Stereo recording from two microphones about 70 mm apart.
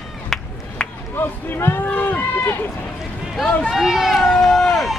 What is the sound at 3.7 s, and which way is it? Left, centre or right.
Speech, centre.